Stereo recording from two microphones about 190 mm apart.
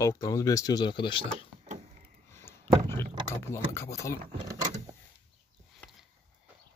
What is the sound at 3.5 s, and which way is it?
Speech, 15° left (ahead or behind).